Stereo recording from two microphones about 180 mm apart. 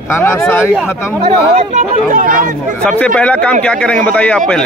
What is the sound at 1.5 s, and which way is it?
Speech, 40° right (ahead or behind).